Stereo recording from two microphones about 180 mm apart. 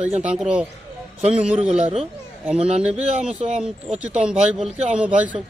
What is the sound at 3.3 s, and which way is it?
Speech, 5° right (ahead or behind).